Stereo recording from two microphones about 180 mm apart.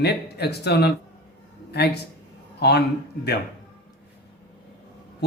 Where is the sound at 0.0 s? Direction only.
65° left (ahead or behind).